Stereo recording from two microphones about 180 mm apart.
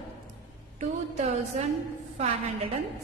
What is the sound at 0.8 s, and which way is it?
Speech, 40° right (ahead or behind).